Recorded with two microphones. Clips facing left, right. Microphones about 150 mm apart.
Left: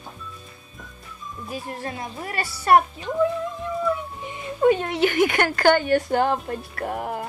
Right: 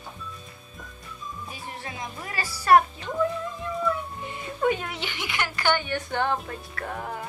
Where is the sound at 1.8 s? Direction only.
40° left (ahead or behind).